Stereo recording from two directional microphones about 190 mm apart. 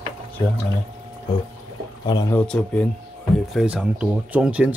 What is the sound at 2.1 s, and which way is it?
Speech, 20° left (ahead or behind).